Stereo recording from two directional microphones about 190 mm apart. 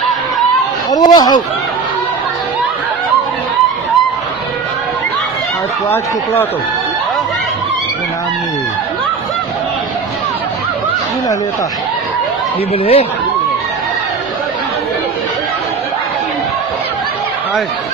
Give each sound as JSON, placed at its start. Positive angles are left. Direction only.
{"t": 0.9, "sound": "speech", "side_deg": 20}
{"t": 12.7, "sound": "speech", "side_deg": 30}